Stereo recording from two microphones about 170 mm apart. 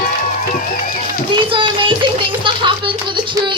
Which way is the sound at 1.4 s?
30° right (ahead or behind).